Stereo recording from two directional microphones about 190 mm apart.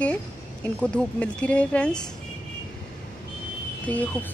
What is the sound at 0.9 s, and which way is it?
Speech, 5° left (ahead or behind).